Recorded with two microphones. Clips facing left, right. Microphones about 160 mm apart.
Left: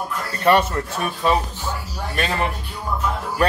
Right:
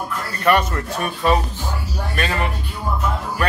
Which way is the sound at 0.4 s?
25° left (ahead or behind).